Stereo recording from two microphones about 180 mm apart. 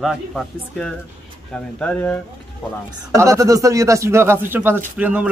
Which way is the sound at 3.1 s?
15° right (ahead or behind).